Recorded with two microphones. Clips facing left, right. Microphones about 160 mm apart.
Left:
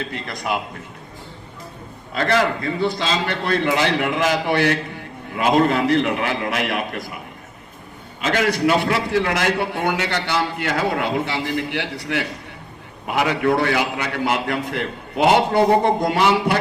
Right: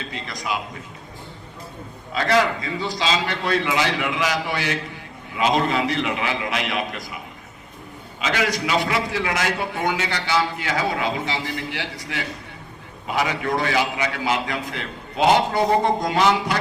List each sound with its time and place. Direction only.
0.1 s a man's voice: 55° left (ahead or behind)
2.1 s a man's voice: 50° left (ahead or behind)
8.2 s a man's voice: 50° left (ahead or behind)